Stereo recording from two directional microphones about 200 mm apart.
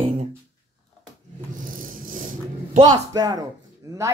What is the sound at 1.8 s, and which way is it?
Rattle, 40° right (ahead or behind).